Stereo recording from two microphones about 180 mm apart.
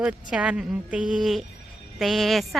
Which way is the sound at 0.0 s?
5° right (ahead or behind).